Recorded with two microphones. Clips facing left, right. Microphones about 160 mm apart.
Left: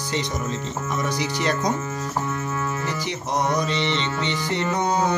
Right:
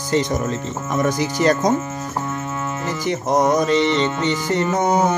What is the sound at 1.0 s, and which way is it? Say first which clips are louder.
Music: right 8 dB; 45° right (ahead or behind).